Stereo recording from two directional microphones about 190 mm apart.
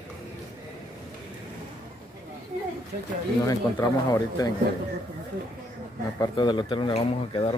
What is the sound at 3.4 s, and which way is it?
Speech, 20° left (ahead or behind).